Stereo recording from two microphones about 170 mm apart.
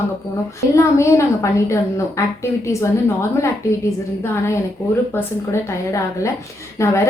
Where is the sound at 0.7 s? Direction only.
15° left (ahead or behind).